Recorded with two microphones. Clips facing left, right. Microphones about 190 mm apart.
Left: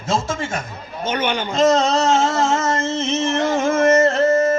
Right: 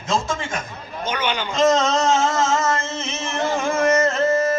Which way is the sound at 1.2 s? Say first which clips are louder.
Left 2 dB; 45° left (ahead or behind).